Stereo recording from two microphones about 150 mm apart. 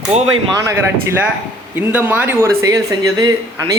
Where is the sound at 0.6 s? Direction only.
15° right (ahead or behind).